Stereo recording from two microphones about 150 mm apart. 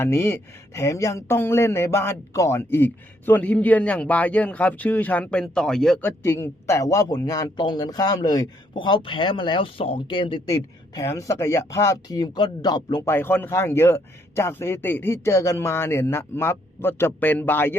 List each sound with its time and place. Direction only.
0.0 s speech: 15° left (ahead or behind)